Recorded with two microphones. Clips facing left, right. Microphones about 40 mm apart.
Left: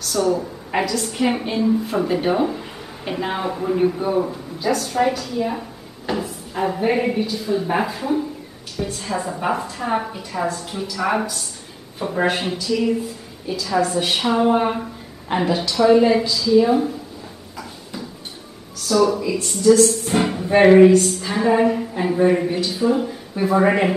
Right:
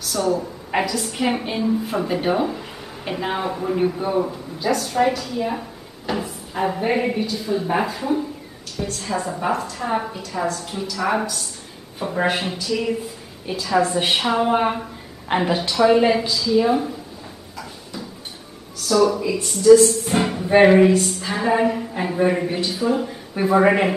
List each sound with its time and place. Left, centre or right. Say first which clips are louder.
0.0 s a woman's voice: left 2 dB; centre
13.5 s a woman's voice: left 1 dB; right
14.1 s a man's voice: left 3 dB; centre
18.9 s a woman's voice: even; centre